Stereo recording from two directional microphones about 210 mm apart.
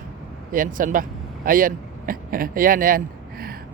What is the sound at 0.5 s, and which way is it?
Speech, 40° right (ahead or behind).